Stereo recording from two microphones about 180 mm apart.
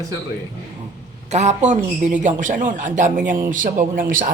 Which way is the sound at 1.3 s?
40° right (ahead or behind).